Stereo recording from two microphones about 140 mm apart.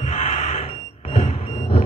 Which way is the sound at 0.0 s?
50° left (ahead or behind).